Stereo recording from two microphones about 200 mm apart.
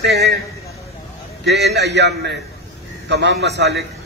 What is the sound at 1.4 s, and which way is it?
A man's voice, 55° right (ahead or behind).